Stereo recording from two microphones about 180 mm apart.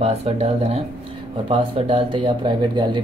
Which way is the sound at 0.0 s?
35° right (ahead or behind).